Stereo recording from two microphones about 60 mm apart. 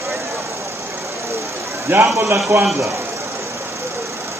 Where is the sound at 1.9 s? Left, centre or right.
Right.